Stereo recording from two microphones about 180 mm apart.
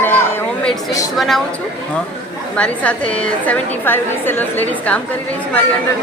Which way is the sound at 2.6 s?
5° left (ahead or behind).